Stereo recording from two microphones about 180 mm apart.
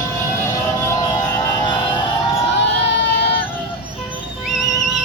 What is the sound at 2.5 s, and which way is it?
Crowd, 75° left (ahead or behind).